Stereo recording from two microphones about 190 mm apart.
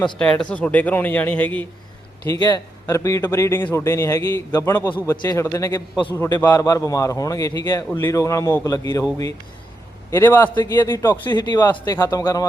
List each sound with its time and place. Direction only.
0.2 s a man's voice: 5° left (ahead or behind)
2.2 s a man's voice: 20° left (ahead or behind)
10.1 s a man's voice: 10° left (ahead or behind)